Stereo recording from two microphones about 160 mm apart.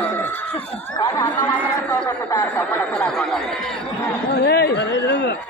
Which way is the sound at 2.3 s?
10° left (ahead or behind).